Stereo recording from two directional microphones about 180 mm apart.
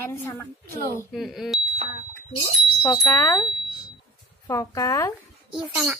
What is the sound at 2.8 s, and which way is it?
Speech, 15° left (ahead or behind).